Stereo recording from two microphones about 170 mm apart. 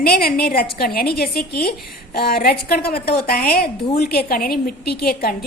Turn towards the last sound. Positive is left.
turn(degrees=65)  # may be behind; listen again after turning